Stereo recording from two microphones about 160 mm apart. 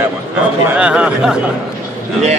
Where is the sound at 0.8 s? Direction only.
5° right (ahead or behind).